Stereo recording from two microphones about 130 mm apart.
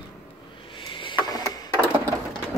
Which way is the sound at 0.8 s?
40° left (ahead or behind).